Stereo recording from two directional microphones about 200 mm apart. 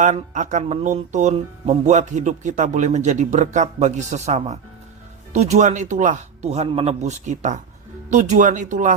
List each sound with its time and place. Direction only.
0.0 s speech: 35° right (ahead or behind)